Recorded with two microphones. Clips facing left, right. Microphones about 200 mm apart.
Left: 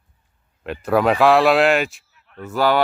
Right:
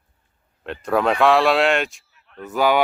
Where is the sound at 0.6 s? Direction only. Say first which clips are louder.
Left 2 dB; 5° left (ahead or behind).